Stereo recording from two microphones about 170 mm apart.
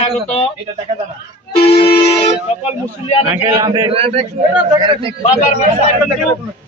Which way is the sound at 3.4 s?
20° right (ahead or behind).